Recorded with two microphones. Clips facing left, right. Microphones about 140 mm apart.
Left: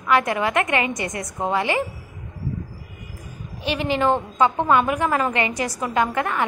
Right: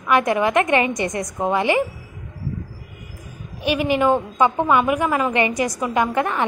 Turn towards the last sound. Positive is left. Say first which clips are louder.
# right 2 dB
turn(degrees=-20)  # may be behind; listen again after turning